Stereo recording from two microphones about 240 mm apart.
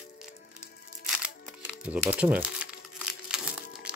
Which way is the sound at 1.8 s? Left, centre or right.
Centre.